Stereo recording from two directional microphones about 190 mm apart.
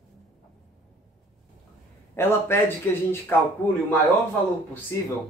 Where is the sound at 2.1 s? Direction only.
10° left (ahead or behind).